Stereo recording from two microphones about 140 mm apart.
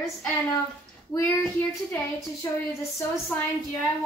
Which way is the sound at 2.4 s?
20° left (ahead or behind).